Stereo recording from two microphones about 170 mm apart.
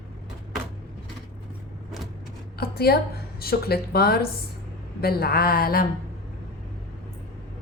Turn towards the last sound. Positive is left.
turn(degrees=60)  # may be behind; listen again after turning